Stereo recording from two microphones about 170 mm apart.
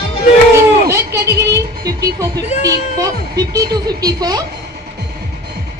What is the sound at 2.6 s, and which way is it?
A child's voice, 20° right (ahead or behind).